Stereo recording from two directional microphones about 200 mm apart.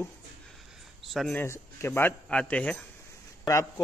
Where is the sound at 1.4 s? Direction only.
10° left (ahead or behind).